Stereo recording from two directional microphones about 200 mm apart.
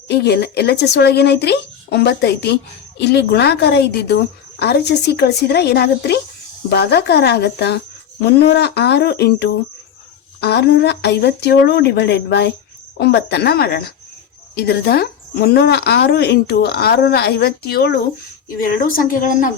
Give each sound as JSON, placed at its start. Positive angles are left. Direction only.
{"t": 0.1, "sound": "a woman's voice", "side_deg": 55}